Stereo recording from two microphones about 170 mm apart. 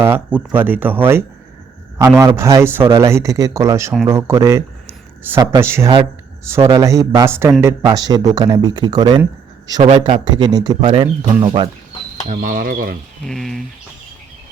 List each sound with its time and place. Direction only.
0.0 s a man's voice: 10° right (ahead or behind); by 11.7 s 30° right (ahead or behind)
12.3 s cutlery: 50° right (ahead or behind)
13.2 s speech: centre (ahead or behind)